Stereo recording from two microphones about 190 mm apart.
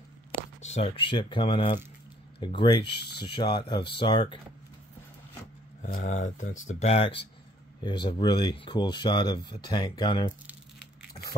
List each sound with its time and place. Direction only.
0.6 s speech: 35° left (ahead or behind)
5.8 s speech: 45° left (ahead or behind); by 10.2 s 25° left (ahead or behind)